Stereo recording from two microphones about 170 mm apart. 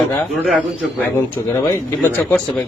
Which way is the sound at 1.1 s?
15° left (ahead or behind).